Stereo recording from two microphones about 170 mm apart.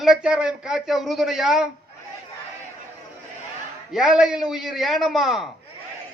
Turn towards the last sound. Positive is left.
turn(degrees=0)  # may be behind; listen again after turning